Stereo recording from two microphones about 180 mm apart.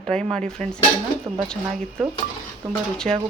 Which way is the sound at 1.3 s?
15° right (ahead or behind).